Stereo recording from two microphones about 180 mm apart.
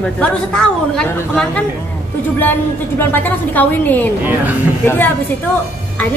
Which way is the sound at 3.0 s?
10° left (ahead or behind).